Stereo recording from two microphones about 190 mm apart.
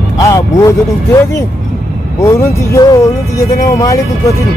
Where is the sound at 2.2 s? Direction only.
15° left (ahead or behind).